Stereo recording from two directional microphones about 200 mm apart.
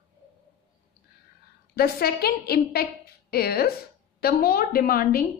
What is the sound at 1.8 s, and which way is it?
A woman's voice, 50° left (ahead or behind).